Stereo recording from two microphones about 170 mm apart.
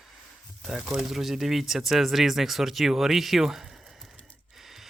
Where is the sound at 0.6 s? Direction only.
Centre (ahead or behind).